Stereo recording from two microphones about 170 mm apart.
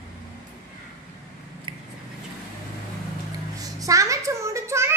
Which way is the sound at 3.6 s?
20° right (ahead or behind).